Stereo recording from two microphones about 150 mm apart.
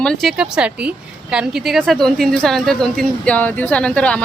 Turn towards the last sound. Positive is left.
turn(degrees=5)  # may be behind; listen again after turning